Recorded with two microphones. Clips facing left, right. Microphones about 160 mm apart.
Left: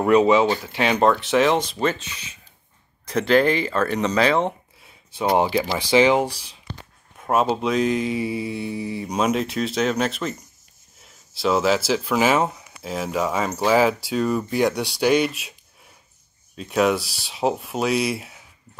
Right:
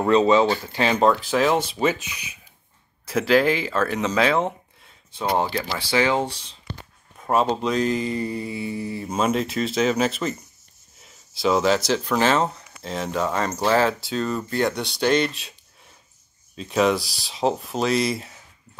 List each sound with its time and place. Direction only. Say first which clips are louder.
0.0 s speech: left 1 dB; 10° left (ahead or behind)
5.2 s speech: left 4 dB; 15° left (ahead or behind)
16.5 s speech: even; 5° left (ahead or behind)